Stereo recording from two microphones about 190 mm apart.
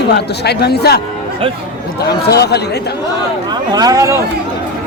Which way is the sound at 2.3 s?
60° left (ahead or behind).